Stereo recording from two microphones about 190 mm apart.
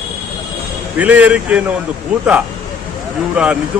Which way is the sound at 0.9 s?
5° right (ahead or behind).